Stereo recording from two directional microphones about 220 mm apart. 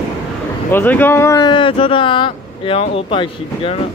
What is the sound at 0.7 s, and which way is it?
Speech, 10° left (ahead or behind).